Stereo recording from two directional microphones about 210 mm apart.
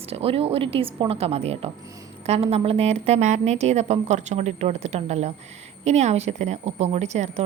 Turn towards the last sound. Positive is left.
turn(degrees=-30)  # may be behind; listen again after turning